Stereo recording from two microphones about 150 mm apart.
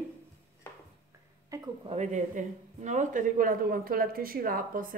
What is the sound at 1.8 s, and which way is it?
A man's voice, 50° right (ahead or behind).